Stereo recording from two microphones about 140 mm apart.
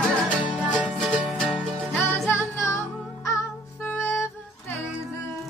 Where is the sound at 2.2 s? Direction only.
20° left (ahead or behind).